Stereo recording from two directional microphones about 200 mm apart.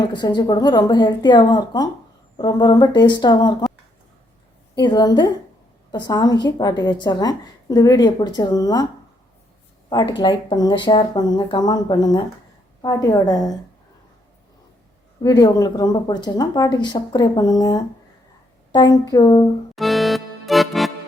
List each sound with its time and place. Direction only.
0.0 s a woman's voice: 20° left (ahead or behind)
4.8 s a woman's voice: 20° left (ahead or behind)
9.9 s a woman's voice: 20° left (ahead or behind)
15.2 s a woman's voice: 20° left (ahead or behind)
19.7 s music: centre (ahead or behind)